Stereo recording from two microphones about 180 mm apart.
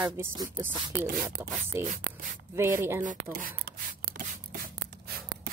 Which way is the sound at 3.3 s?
50° right (ahead or behind).